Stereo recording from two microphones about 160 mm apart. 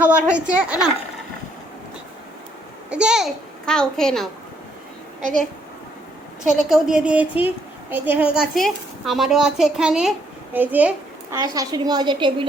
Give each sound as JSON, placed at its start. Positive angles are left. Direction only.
{"t": 0.0, "sound": "a woman's voice", "side_deg": -5}
{"t": 2.9, "sound": "a woman's voice", "side_deg": -5}
{"t": 6.4, "sound": "a woman's voice", "side_deg": -5}
{"t": 11.3, "sound": "a woman's voice", "side_deg": -20}